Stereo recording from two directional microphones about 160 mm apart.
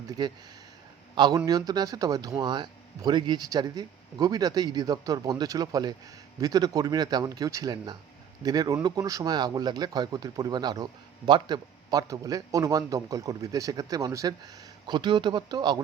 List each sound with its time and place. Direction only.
0.2 s speech: 25° right (ahead or behind)